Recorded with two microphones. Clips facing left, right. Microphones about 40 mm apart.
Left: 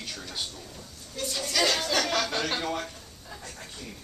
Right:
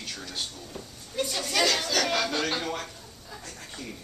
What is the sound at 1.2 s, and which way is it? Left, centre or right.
Speech, right.